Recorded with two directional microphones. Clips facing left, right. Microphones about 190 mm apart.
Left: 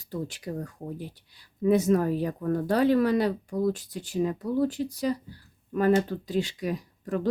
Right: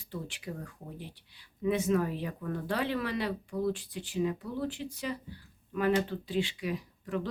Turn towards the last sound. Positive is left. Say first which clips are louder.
# left 5 dB
turn(degrees=45)  # may be behind; listen again after turning